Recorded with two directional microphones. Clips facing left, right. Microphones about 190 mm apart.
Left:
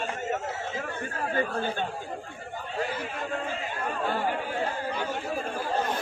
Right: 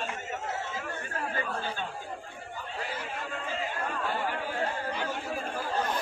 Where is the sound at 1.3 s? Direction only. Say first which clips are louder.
Left 8 dB; 45° left (ahead or behind).